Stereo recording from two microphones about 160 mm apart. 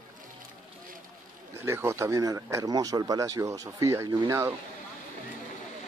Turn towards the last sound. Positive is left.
turn(degrees=-15)  # may be behind; listen again after turning